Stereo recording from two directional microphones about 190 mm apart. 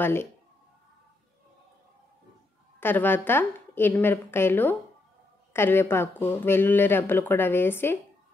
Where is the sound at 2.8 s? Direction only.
10° left (ahead or behind).